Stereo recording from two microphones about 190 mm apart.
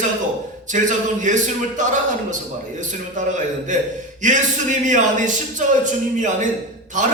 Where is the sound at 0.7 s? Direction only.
40° right (ahead or behind).